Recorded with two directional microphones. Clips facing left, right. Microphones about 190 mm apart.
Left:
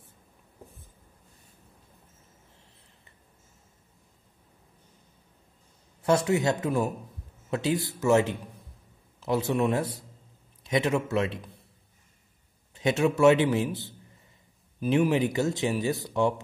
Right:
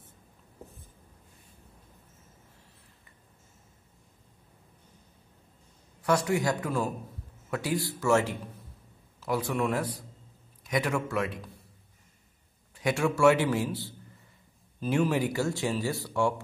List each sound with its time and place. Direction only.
6.0 s speech: 25° left (ahead or behind)
12.7 s speech: 20° left (ahead or behind)